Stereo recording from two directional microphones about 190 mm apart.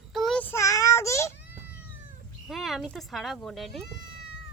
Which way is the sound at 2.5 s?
Centre (ahead or behind).